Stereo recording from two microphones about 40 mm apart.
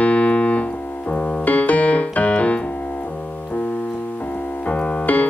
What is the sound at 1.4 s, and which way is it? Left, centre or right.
Keyboard, left.